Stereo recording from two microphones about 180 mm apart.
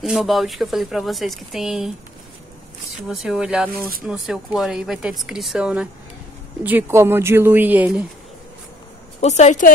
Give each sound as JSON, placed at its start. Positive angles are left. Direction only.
{"t": 0.0, "sound": "speech", "side_deg": 0}
{"t": 3.1, "sound": "speech", "side_deg": -5}
{"t": 9.2, "sound": "a woman's voice", "side_deg": 40}